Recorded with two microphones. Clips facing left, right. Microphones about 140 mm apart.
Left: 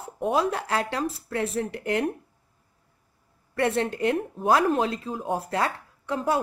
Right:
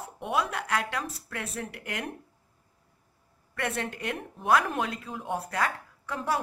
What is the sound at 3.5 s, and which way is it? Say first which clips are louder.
Speech: left 8 dB; 30° left (ahead or behind).